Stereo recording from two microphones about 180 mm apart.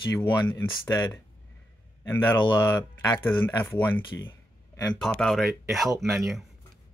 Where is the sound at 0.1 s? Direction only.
15° left (ahead or behind).